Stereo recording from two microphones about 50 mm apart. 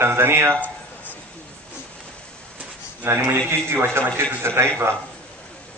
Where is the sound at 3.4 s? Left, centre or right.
Right.